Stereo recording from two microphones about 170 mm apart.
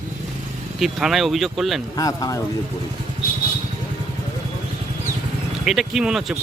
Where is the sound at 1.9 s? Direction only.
20° left (ahead or behind).